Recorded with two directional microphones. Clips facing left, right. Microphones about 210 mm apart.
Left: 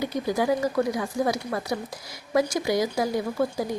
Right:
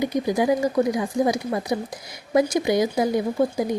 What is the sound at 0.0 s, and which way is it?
A woman's voice, 15° right (ahead or behind).